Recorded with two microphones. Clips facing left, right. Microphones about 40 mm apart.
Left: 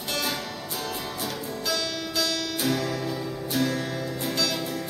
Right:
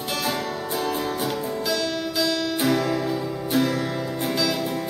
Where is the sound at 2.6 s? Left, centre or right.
Centre.